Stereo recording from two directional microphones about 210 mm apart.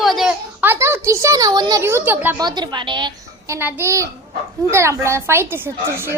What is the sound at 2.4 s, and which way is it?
A child's voice, 20° right (ahead or behind).